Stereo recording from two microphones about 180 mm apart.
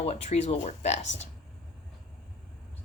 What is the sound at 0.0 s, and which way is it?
Speech, 35° left (ahead or behind).